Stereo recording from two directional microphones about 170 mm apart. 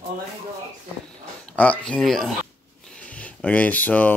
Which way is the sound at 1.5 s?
10° left (ahead or behind).